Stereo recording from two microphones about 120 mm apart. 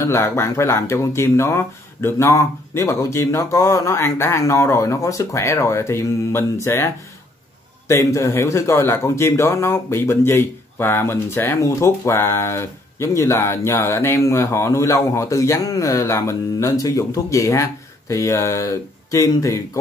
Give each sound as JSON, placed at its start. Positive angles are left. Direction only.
{"t": 0.0, "sound": "speech", "side_deg": 20}
{"t": 7.9, "sound": "speech", "side_deg": 25}